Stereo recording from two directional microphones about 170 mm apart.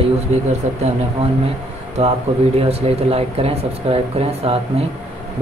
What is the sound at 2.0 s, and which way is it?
Speech, 40° right (ahead or behind).